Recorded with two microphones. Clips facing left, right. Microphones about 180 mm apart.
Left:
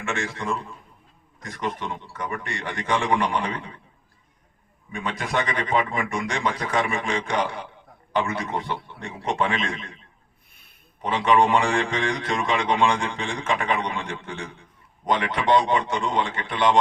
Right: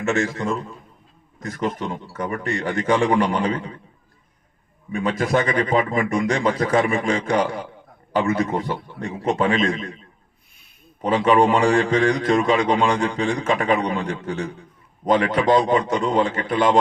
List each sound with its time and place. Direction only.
0.0 s a man's voice: 40° right (ahead or behind)
4.9 s a man's voice: 40° right (ahead or behind)
11.0 s a man's voice: 40° right (ahead or behind)